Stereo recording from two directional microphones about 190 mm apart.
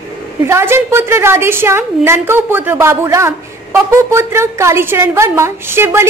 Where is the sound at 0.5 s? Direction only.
15° right (ahead or behind).